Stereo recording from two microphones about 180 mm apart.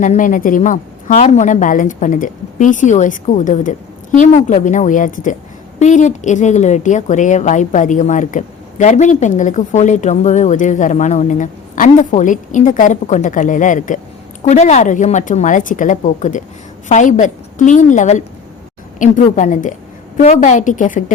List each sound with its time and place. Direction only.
0.0 s a woman's voice: 45° left (ahead or behind)